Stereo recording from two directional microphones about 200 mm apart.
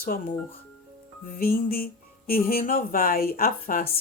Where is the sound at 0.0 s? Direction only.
45° left (ahead or behind).